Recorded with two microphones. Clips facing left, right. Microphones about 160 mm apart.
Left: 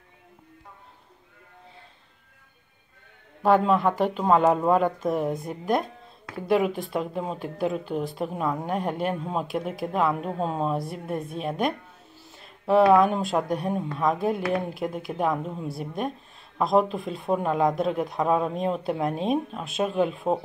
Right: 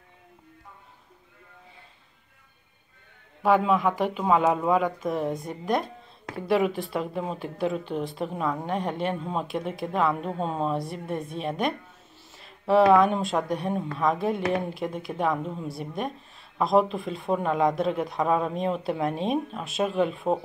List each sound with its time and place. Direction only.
3.4 s speech: 5° right (ahead or behind)